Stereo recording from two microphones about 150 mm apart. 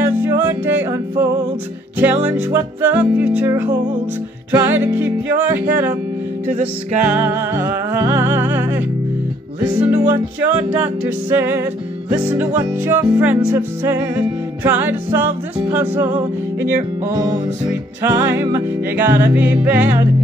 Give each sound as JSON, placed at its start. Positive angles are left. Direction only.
{"t": 0.0, "sound": "music", "side_deg": -15}
{"t": 2.2, "sound": "music", "side_deg": -10}
{"t": 7.1, "sound": "music", "side_deg": -15}
{"t": 17.1, "sound": "music", "side_deg": -25}